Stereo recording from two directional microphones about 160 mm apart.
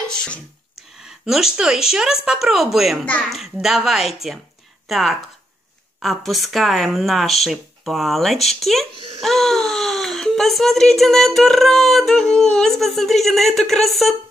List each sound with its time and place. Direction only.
1.0 s a woman's voice: centre (ahead or behind)
8.9 s speech: 35° right (ahead or behind)
9.2 s speech: centre (ahead or behind)